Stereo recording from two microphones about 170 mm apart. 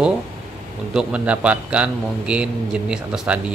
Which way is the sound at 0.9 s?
5° right (ahead or behind).